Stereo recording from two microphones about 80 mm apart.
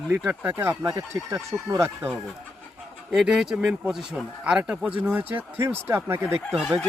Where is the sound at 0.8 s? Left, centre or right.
Right.